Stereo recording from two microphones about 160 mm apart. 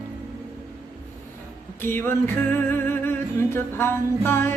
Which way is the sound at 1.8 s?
15° left (ahead or behind).